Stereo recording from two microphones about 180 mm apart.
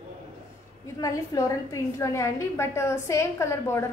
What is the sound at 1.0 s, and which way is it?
A woman's voice, 20° left (ahead or behind).